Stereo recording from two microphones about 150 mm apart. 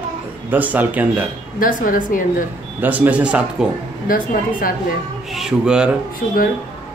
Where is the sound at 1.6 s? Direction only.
65° left (ahead or behind).